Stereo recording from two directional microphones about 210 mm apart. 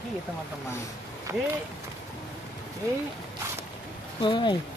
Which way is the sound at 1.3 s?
10° right (ahead or behind).